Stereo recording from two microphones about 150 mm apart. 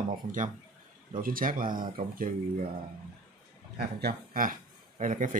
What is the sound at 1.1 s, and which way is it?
Speech, 70° right (ahead or behind).